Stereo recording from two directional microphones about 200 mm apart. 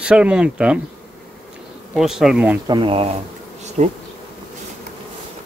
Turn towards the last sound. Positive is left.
turn(degrees=-35)  # may be behind; listen again after turning